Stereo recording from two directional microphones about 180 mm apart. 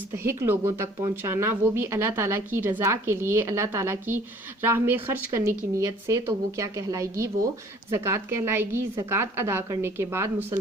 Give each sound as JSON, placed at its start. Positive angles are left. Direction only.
{"t": 0.1, "sound": "speech", "side_deg": -15}